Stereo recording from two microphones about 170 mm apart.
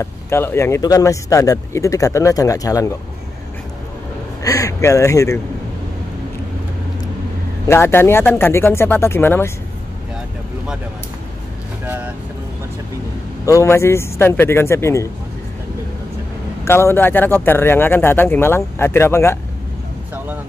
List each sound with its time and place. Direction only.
0.0 s speech: 15° left (ahead or behind)
4.4 s a man's voice: 20° left (ahead or behind)
7.6 s speech: 15° left (ahead or behind)
11.8 s vehicle: 10° right (ahead or behind)
13.5 s speech: 15° left (ahead or behind)
16.6 s speech: 15° left (ahead or behind)